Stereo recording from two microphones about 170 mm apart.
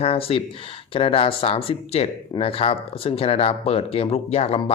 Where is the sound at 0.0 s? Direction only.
35° left (ahead or behind).